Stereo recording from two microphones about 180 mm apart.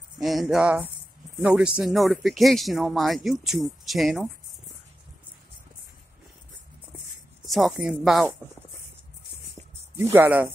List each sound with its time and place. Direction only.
0.2 s speech: centre (ahead or behind)
7.4 s speech: centre (ahead or behind)
9.9 s speech: 15° right (ahead or behind)